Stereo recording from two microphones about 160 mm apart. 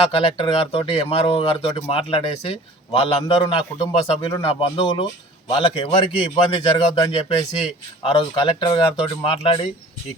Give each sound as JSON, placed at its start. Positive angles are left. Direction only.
{"t": 0.1, "sound": "speech", "side_deg": 35}